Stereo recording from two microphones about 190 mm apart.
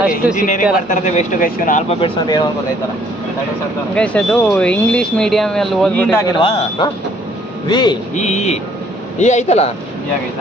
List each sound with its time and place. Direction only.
0.4 s speech: 40° left (ahead or behind)
2.0 s speech: 25° left (ahead or behind)
3.9 s speech: 5° left (ahead or behind); by 7.9 s 25° left (ahead or behind)
8.1 s speech: 35° left (ahead or behind)